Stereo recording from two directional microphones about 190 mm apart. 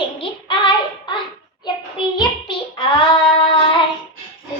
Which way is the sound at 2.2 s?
25° left (ahead or behind).